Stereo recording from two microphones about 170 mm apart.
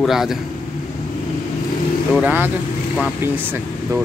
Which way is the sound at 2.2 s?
10° right (ahead or behind).